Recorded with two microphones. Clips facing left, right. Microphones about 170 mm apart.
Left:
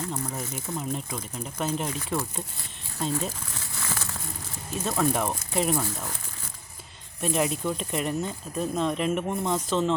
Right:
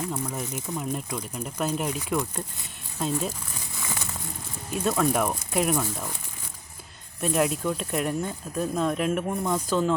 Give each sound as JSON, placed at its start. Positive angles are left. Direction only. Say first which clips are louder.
{"t": 0.1, "sound": "speech", "louder": "right 2 dB", "side_deg": 0}
{"t": 3.8, "sound": "a sound", "louder": "even", "side_deg": -15}
{"t": 4.7, "sound": "speech", "louder": "right 2 dB", "side_deg": -5}
{"t": 7.2, "sound": "speech", "louder": "right 2 dB", "side_deg": 0}